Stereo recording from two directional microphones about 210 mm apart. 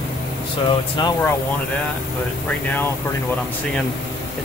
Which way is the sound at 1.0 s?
20° left (ahead or behind).